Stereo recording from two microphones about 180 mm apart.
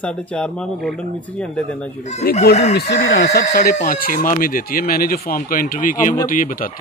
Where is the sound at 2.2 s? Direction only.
55° left (ahead or behind).